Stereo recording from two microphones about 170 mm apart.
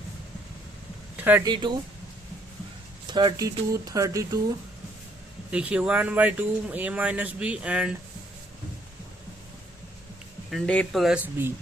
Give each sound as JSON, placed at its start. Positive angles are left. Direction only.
{"t": 1.1, "sound": "a sound", "side_deg": -10}
{"t": 1.5, "sound": "speech", "side_deg": -25}
{"t": 3.1, "sound": "speech", "side_deg": -25}
{"t": 5.5, "sound": "speech", "side_deg": -5}
{"t": 10.5, "sound": "speech", "side_deg": 5}